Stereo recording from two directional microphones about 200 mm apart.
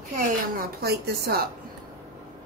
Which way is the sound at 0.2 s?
50° right (ahead or behind).